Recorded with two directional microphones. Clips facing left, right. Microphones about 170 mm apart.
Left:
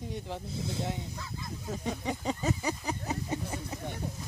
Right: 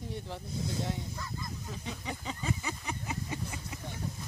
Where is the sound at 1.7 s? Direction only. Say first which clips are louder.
Left 9 dB; 45° left (ahead or behind).